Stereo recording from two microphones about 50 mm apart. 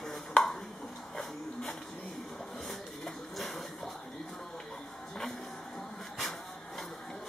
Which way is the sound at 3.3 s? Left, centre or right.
Centre.